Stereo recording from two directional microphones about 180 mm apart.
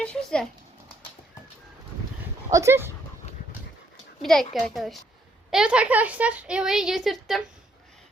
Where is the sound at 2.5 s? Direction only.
15° right (ahead or behind).